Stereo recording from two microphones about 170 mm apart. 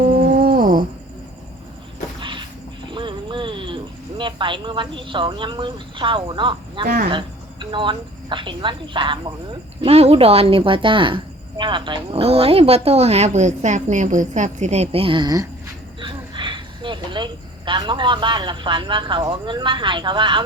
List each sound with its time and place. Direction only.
0.0 s dog: 60° right (ahead or behind)
2.9 s a sound: 30° right (ahead or behind)
4.2 s a woman's voice: 30° right (ahead or behind)
6.8 s speech: 60° right (ahead or behind)
7.1 s a woman's voice: 30° right (ahead or behind)